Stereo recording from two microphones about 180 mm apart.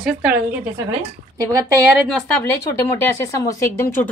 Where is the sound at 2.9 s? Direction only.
15° left (ahead or behind).